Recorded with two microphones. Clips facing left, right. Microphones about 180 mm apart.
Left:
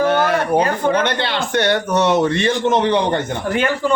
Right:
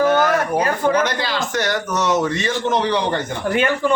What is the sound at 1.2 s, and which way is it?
Speech, 30° left (ahead or behind).